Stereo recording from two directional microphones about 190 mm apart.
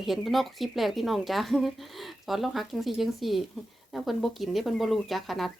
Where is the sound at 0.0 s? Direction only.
Centre (ahead or behind).